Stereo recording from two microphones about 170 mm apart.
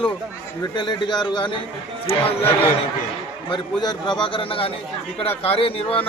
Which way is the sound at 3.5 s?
25° left (ahead or behind).